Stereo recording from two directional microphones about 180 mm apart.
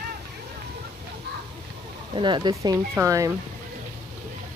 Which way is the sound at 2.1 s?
25° right (ahead or behind).